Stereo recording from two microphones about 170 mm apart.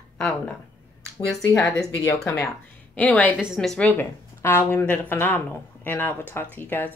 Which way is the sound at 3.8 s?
15° left (ahead or behind).